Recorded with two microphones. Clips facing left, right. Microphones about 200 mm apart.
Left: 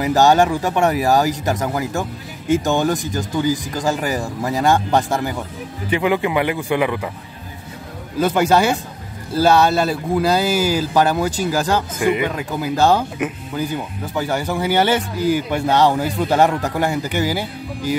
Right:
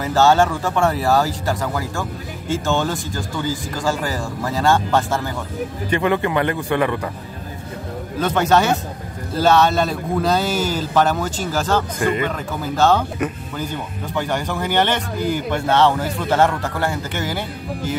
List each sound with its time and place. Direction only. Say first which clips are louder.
0.0 s a man's voice: left 1 dB; 15° left (ahead or behind)
8.2 s a man's voice: left 2 dB; 10° left (ahead or behind)